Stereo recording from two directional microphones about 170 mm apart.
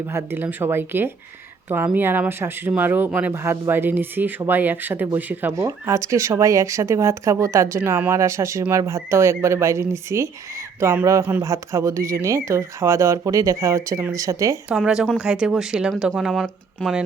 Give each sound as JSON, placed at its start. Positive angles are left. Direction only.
{"t": 0.1, "sound": "speech", "side_deg": -15}
{"t": 14.7, "sound": "speech", "side_deg": -5}